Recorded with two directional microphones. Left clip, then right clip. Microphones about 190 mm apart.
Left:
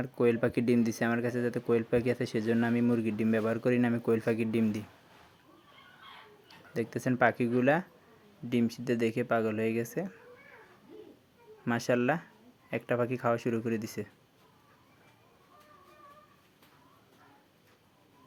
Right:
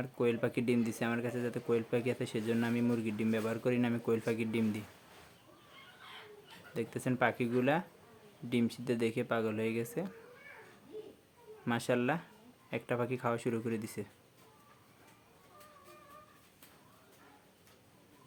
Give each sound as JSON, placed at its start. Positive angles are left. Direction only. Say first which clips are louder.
{"t": 0.0, "sound": "speech", "louder": "left 5 dB", "side_deg": 25}
{"t": 6.7, "sound": "speech", "louder": "left 5 dB", "side_deg": 20}
{"t": 11.6, "sound": "speech", "louder": "left 4 dB", "side_deg": 15}